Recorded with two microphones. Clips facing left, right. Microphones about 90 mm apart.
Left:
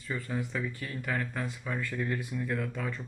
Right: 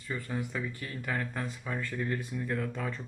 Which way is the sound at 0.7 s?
35° right (ahead or behind).